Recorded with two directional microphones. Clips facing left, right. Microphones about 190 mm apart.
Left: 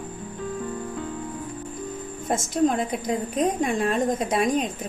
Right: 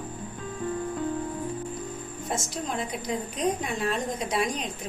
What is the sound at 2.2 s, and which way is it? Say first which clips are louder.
A woman's voice: left 11 dB; 50° left (ahead or behind).